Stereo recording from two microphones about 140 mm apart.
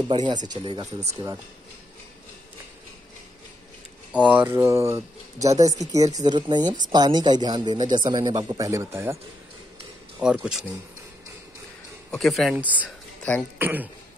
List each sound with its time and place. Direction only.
0.1 s speech: 35° right (ahead or behind)
4.1 s speech: 10° right (ahead or behind)
10.2 s speech: 5° right (ahead or behind)
12.1 s speech: centre (ahead or behind)
12.5 s speech: 10° right (ahead or behind)